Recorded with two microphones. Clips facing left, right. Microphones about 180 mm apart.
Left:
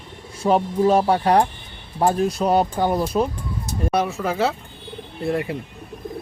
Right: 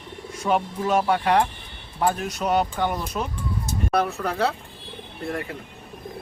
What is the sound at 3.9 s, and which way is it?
Speech, centre (ahead or behind).